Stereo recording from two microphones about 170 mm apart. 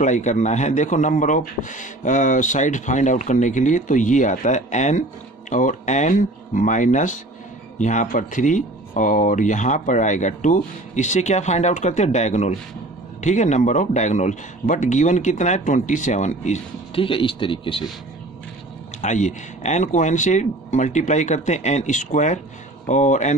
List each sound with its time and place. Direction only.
0.0 s a man's voice: 45° left (ahead or behind)
18.9 s a man's voice: 45° left (ahead or behind)